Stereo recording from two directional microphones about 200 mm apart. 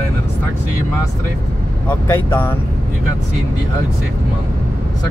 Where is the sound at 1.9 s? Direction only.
10° left (ahead or behind).